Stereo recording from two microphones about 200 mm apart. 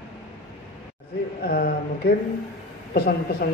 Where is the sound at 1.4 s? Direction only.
50° left (ahead or behind).